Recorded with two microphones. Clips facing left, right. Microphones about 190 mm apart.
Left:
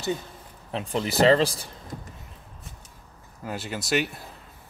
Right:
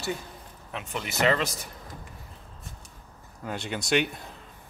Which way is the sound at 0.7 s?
35° left (ahead or behind).